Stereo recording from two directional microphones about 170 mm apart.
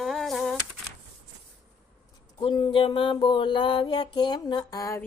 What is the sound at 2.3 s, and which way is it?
Mantra, 25° left (ahead or behind).